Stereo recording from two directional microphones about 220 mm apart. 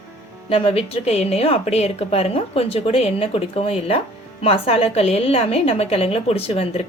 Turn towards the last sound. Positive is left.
turn(degrees=25)  # may be behind; listen again after turning